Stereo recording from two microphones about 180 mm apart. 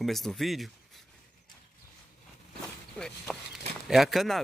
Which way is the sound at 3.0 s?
5° left (ahead or behind).